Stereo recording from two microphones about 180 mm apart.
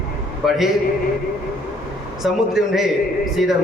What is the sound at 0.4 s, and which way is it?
Speech, centre (ahead or behind).